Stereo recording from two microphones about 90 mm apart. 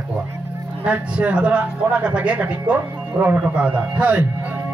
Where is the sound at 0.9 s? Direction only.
15° right (ahead or behind).